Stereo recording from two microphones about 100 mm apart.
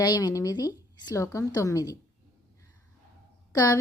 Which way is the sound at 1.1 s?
30° left (ahead or behind).